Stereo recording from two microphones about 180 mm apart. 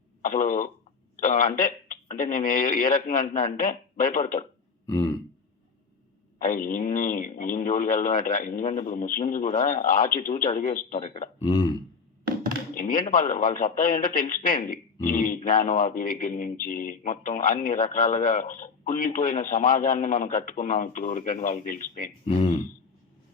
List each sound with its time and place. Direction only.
0.2 s speech: 45° left (ahead or behind)
4.9 s burping: 15° left (ahead or behind)
6.4 s speech: 45° left (ahead or behind)
11.5 s a man's voice: 30° left (ahead or behind)
12.7 s speech: 50° left (ahead or behind)
22.3 s a man's voice: 35° left (ahead or behind)